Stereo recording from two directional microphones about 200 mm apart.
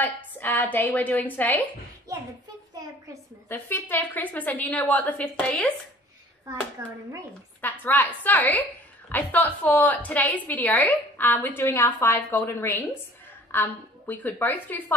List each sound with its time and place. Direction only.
0.0 s a woman's voice: 10° left (ahead or behind)
3.4 s a woman's voice: 10° left (ahead or behind)
6.8 s speech: 20° right (ahead or behind)
7.8 s a woman's voice: 10° left (ahead or behind)